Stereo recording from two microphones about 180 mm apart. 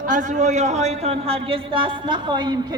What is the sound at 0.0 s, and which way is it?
A man's voice, 45° right (ahead or behind).